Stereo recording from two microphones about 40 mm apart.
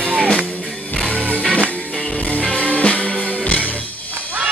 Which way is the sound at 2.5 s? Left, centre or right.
Left.